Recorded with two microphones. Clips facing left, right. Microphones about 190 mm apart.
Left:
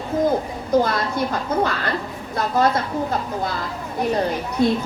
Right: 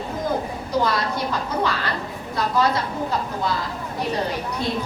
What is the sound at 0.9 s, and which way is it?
A woman's voice, 50° left (ahead or behind).